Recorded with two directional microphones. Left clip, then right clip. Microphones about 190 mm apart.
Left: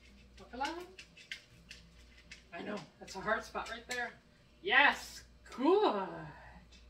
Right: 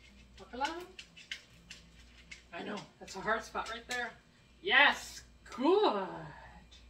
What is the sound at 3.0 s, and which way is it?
Speech, centre (ahead or behind).